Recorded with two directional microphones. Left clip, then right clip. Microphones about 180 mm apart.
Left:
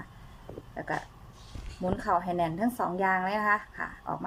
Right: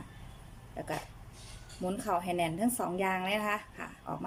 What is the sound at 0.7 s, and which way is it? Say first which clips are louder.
Dog: left 4 dB; 20° right (ahead or behind).